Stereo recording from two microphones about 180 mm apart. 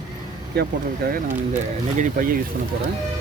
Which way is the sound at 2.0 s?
50° right (ahead or behind).